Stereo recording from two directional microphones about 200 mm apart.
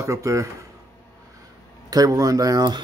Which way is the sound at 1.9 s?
15° right (ahead or behind).